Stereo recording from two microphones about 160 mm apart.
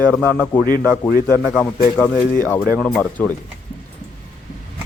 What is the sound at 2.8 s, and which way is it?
Speech, 5° left (ahead or behind).